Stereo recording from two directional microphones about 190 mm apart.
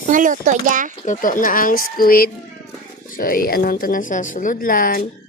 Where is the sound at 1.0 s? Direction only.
45° left (ahead or behind).